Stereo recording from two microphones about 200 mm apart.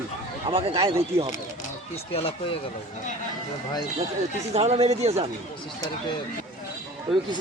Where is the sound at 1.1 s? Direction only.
15° right (ahead or behind).